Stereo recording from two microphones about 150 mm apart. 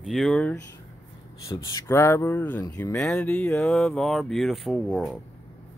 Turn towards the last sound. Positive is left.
turn(degrees=0)  # may be behind; listen again after turning